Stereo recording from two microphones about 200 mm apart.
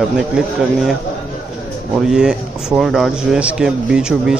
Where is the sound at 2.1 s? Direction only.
5° right (ahead or behind).